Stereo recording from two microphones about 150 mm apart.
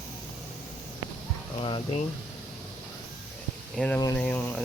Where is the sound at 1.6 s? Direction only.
35° left (ahead or behind).